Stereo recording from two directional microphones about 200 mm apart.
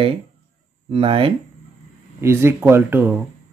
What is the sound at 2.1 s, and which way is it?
Speech, 10° right (ahead or behind).